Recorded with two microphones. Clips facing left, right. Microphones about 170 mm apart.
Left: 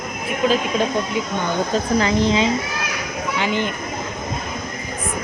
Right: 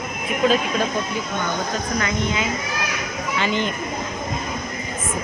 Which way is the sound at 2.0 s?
30° left (ahead or behind).